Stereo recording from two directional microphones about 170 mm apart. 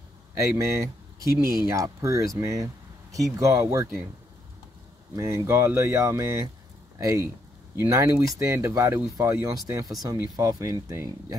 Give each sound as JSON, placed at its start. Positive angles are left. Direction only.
{"t": 0.4, "sound": "speech", "side_deg": -15}
{"t": 5.1, "sound": "speech", "side_deg": -15}